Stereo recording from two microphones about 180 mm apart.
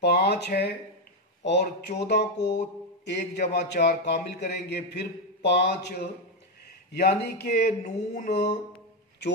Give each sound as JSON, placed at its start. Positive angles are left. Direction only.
{"t": 0.0, "sound": "a man's voice", "side_deg": 65}